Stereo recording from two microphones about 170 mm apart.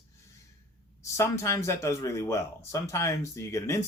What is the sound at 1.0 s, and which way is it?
Speech, 15° left (ahead or behind).